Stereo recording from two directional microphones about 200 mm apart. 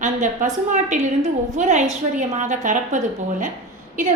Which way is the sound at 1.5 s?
35° right (ahead or behind).